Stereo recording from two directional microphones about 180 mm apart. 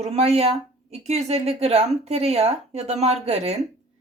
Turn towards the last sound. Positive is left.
turn(degrees=-35)  # may be behind; listen again after turning